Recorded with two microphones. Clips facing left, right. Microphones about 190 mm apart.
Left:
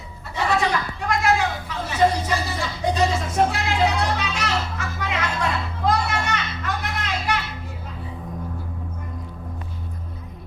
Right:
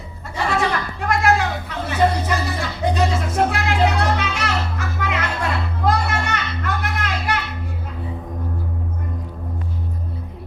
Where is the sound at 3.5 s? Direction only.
55° right (ahead or behind).